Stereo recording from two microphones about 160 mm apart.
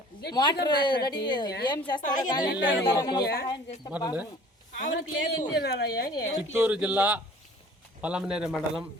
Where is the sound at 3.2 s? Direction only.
85° left.